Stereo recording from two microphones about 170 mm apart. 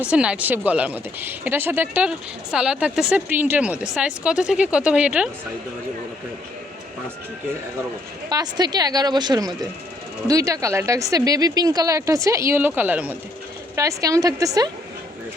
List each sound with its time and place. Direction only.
0.1 s speech: 5° right (ahead or behind)
8.3 s speech: 25° right (ahead or behind)